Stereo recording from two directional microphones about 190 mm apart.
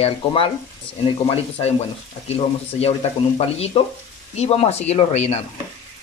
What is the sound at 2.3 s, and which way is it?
Speech, 30° left (ahead or behind).